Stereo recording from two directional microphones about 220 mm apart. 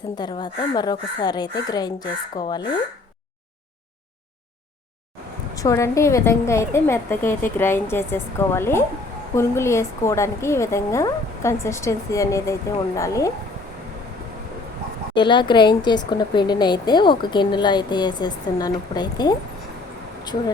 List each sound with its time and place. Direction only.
0.2 s speech: 20° left (ahead or behind)
5.5 s a woman's voice: 15° left (ahead or behind)
15.1 s speech: 20° left (ahead or behind)